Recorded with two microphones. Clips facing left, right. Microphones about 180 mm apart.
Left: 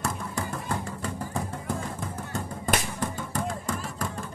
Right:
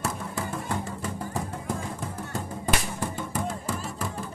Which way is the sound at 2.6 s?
5° right (ahead or behind).